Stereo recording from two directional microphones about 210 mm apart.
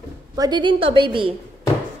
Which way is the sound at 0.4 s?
20° right (ahead or behind).